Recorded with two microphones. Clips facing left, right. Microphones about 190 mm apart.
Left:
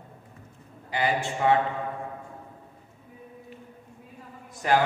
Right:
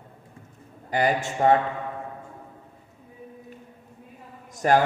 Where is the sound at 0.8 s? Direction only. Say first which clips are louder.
Right 3 dB; 45° right (ahead or behind).